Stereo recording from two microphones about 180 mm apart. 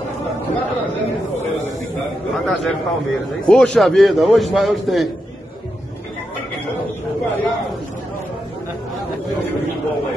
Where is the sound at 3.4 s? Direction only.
5° left (ahead or behind).